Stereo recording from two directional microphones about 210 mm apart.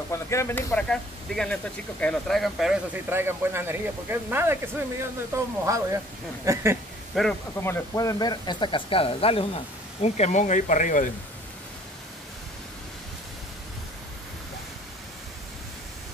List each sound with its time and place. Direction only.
0.1 s speech: 15° left (ahead or behind); by 6.8 s 15° right (ahead or behind)
7.2 s speech: 5° left (ahead or behind); by 11.1 s 35° left (ahead or behind)